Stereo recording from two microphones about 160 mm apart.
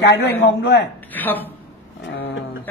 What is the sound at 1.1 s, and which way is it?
Speech, 10° left (ahead or behind).